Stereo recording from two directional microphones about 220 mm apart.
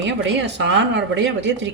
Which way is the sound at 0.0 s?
55° right (ahead or behind).